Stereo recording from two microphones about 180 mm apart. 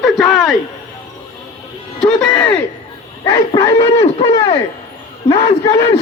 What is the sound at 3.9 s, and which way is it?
Speech, 35° left (ahead or behind).